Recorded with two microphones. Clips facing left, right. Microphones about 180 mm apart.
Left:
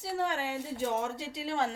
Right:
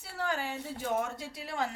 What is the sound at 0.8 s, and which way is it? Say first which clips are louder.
Speech: even; 25° left (ahead or behind).